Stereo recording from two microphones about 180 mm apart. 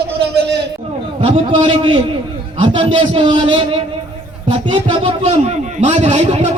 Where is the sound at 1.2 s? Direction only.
30° right (ahead or behind).